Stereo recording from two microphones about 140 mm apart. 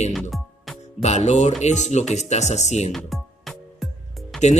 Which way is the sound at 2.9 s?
Centre (ahead or behind).